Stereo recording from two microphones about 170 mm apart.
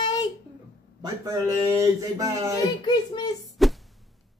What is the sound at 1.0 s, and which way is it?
Speech, 20° right (ahead or behind).